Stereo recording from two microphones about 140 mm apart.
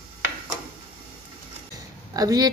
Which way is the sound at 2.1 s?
25° right (ahead or behind).